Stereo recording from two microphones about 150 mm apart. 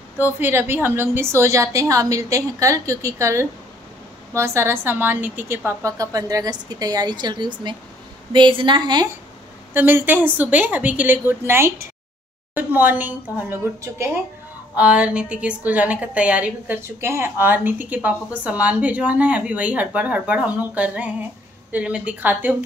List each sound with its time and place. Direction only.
0.2 s a woman's voice: 15° right (ahead or behind); by 9.1 s 30° right (ahead or behind)
9.8 s a woman's voice: 15° right (ahead or behind)